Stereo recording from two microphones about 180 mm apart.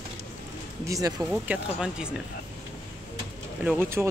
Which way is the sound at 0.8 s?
20° right (ahead or behind).